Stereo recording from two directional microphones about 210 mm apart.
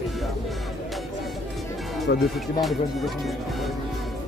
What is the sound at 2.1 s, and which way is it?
Speech, 55° left (ahead or behind).